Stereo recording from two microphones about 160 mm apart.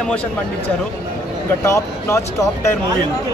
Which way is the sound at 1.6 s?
20° left (ahead or behind).